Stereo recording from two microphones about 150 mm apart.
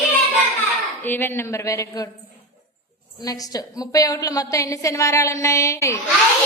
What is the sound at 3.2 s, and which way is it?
A woman's voice, 25° left (ahead or behind).